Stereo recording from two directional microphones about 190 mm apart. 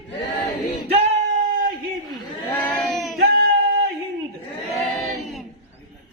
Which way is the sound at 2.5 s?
5° left (ahead or behind).